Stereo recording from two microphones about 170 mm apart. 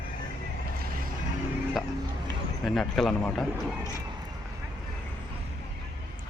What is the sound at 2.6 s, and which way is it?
Speech, centre (ahead or behind).